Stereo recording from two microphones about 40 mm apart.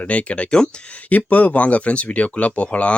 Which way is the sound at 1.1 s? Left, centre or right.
Left.